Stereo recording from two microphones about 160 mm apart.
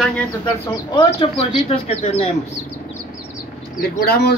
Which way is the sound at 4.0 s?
80° left.